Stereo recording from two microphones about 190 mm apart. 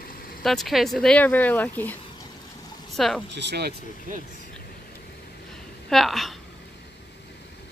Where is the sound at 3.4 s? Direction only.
65° right (ahead or behind).